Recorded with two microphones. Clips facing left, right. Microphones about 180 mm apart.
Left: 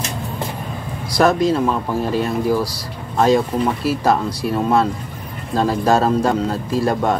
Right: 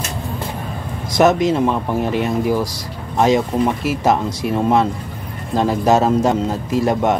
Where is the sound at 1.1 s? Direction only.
20° right (ahead or behind).